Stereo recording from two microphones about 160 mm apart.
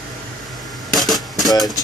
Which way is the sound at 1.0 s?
Centre (ahead or behind).